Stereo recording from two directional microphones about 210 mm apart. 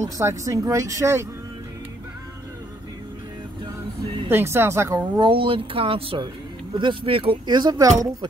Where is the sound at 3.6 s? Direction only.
20° right (ahead or behind).